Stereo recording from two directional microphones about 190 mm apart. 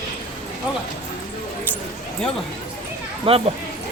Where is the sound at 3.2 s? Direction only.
30° right (ahead or behind).